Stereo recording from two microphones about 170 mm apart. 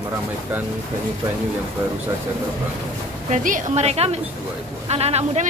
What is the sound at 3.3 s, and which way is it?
A woman's voice, 50° right (ahead or behind).